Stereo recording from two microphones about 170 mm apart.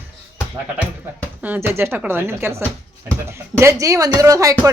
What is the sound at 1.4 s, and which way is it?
Speech, 10° right (ahead or behind).